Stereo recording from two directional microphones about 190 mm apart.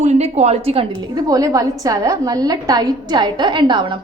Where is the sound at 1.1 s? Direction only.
20° right (ahead or behind).